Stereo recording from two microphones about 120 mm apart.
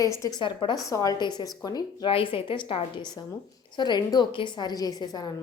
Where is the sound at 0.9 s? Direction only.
30° left (ahead or behind).